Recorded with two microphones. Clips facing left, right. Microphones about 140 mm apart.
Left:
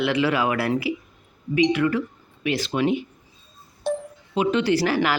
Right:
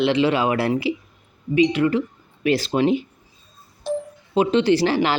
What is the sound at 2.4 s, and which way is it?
Speech, 35° right (ahead or behind).